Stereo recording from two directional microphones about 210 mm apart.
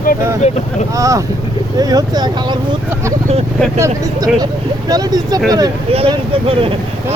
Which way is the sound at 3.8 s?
15° right (ahead or behind).